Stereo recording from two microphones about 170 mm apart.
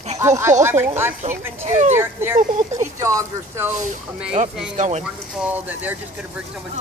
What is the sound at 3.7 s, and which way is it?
Speech, 45° right (ahead or behind).